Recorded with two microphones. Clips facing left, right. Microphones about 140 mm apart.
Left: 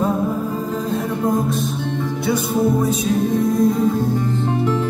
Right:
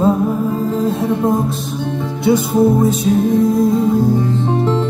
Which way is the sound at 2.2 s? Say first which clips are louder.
Right 7 dB; 25° right (ahead or behind).